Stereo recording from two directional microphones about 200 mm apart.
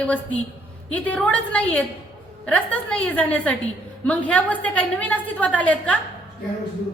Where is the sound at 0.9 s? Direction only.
5° left (ahead or behind).